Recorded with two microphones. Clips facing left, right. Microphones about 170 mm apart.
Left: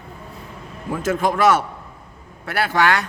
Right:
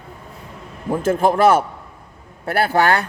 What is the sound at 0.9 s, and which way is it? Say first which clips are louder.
A man's voice: right 4 dB; 35° right (ahead or behind).